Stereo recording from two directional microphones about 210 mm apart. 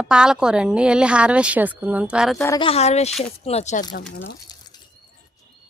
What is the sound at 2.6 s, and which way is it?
Speech, 30° left (ahead or behind).